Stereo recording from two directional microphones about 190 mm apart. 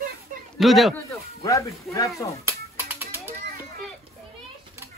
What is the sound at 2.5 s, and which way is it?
Music, 10° right (ahead or behind).